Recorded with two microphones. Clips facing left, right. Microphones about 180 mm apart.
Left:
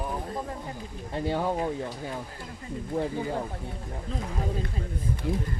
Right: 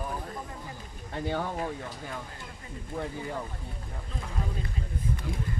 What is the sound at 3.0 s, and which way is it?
Speech, 45° left (ahead or behind).